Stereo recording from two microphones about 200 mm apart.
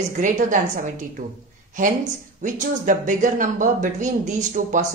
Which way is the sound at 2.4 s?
40° right (ahead or behind).